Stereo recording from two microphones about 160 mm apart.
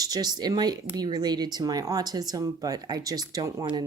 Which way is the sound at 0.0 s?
25° right (ahead or behind).